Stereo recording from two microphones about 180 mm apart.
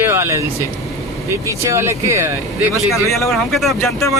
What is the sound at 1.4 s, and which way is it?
Speech, 15° right (ahead or behind).